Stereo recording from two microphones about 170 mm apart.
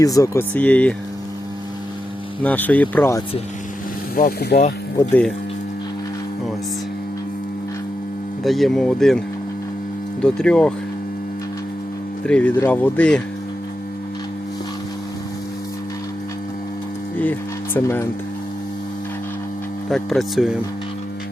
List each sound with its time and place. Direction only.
0.0 s speech: 20° left (ahead or behind)
2.4 s speech: 10° left (ahead or behind)
4.1 s speech: 60° left (ahead or behind)
8.4 s speech: centre (ahead or behind)
10.2 s speech: 5° left (ahead or behind)
12.2 s speech: 5° left (ahead or behind)
17.7 s speech: 15° left (ahead or behind)
19.9 s speech: centre (ahead or behind)